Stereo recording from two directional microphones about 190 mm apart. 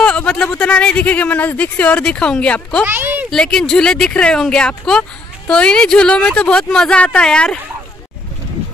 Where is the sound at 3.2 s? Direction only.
5° left (ahead or behind).